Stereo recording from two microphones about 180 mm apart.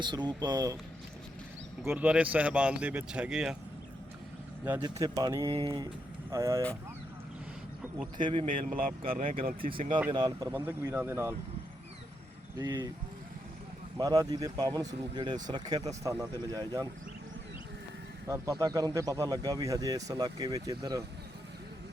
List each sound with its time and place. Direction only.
0.0 s speech: 25° right (ahead or behind)
1.8 s speech: 10° right (ahead or behind)
4.8 s speech: 20° right (ahead or behind)
8.2 s speech: 30° right (ahead or behind)
8.6 s speech: 50° right (ahead or behind)
9.0 s speech: 30° right (ahead or behind); by 11.3 s 15° right (ahead or behind)
12.5 s speech: 20° right (ahead or behind)
14.0 s speech: 20° right (ahead or behind)
18.3 s speech: 20° right (ahead or behind)